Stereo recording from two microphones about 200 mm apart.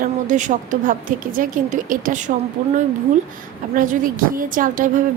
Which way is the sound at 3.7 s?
40° right (ahead or behind).